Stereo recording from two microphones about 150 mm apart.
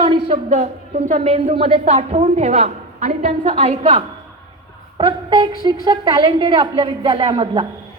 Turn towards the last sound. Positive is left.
turn(degrees=-35)  # may be behind; listen again after turning